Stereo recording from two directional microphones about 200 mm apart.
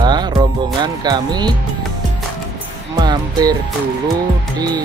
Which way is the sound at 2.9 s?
20° right (ahead or behind).